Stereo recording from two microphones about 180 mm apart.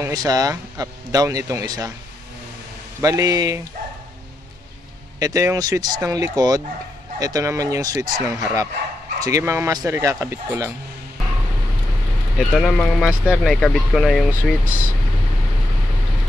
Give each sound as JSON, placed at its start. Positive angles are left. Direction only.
{"t": 0.0, "sound": "speech", "side_deg": -20}
{"t": 3.0, "sound": "speech", "side_deg": -20}
{"t": 5.2, "sound": "speech", "side_deg": -20}
{"t": 12.4, "sound": "speech", "side_deg": 0}